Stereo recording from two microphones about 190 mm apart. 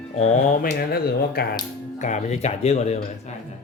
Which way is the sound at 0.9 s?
55° left (ahead or behind).